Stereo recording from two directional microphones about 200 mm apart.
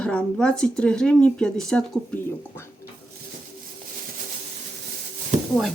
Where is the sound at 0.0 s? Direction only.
5° left (ahead or behind).